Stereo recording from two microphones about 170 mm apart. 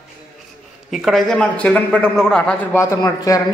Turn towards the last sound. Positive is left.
turn(degrees=20)  # may be behind; listen again after turning